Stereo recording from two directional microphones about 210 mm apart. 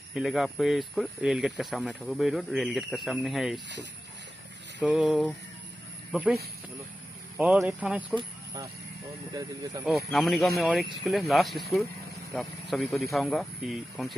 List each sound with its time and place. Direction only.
0.1 s speech: centre (ahead or behind)
4.7 s speech: 5° right (ahead or behind)
7.3 s speech: 5° right (ahead or behind)
9.3 s speech: 15° right (ahead or behind)
9.8 s speech: centre (ahead or behind)